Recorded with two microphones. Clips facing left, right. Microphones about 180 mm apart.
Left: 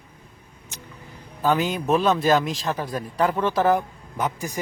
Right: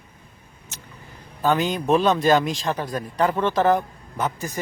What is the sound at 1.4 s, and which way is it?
A man's voice, 5° left (ahead or behind).